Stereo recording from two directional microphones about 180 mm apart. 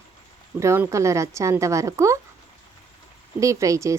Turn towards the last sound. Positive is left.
turn(degrees=-15)  # may be behind; listen again after turning